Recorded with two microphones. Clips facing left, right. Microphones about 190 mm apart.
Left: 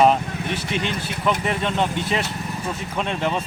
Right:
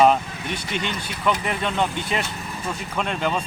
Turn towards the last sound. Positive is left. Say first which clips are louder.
# left 1 dB
turn(degrees=0)  # may be behind; listen again after turning